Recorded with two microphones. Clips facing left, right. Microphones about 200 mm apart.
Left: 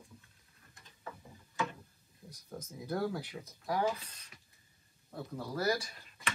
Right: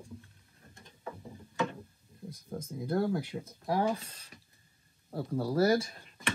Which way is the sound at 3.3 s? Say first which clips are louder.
Right 4 dB; 30° right (ahead or behind).